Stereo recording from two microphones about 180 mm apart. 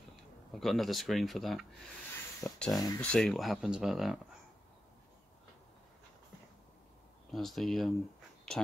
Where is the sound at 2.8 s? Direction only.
20° left (ahead or behind).